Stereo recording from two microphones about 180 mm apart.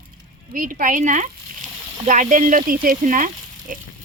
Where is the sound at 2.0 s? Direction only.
45° right (ahead or behind).